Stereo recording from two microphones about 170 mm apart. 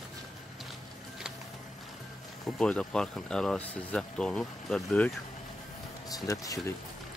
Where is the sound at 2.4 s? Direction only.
5° left (ahead or behind).